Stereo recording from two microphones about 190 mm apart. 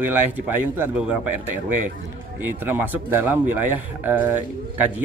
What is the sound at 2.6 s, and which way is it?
Speech, 10° right (ahead or behind).